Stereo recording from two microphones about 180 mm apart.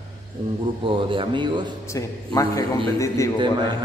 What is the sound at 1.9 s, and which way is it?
A man's voice, 20° left (ahead or behind).